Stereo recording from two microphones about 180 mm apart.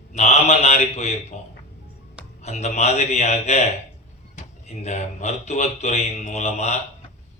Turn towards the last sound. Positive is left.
turn(degrees=40)  # may be behind; listen again after turning